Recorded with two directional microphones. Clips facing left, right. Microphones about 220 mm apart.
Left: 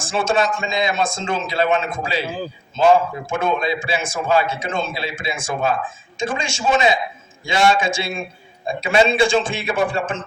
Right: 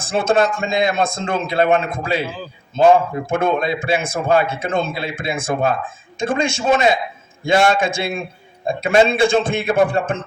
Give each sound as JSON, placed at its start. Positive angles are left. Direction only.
{"t": 0.1, "sound": "a man's voice", "side_deg": -60}